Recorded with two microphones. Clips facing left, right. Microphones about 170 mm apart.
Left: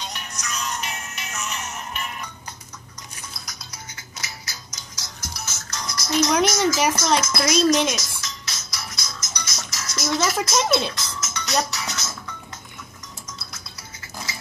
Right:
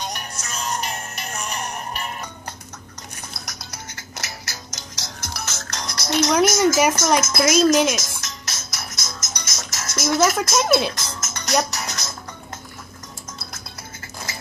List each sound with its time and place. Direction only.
0.0 s music: 45° right (ahead or behind)
0.3 s music: 30° right (ahead or behind)
0.6 s music: 45° right (ahead or behind)
3.7 s music: 80° right; by 6.1 s 65° right (ahead or behind)
6.4 s speech: 45° right (ahead or behind)
7.2 s music: 45° right (ahead or behind)
10.1 s speech: 5° right (ahead or behind)
10.9 s music: 50° right (ahead or behind)
11.7 s speech: 45° right (ahead or behind)